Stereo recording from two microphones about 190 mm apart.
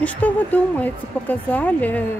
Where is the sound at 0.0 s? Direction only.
10° left (ahead or behind).